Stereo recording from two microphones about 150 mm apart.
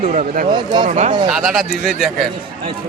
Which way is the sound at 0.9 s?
55° right (ahead or behind).